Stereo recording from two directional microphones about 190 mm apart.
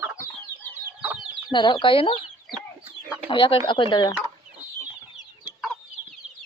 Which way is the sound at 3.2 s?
30° left (ahead or behind).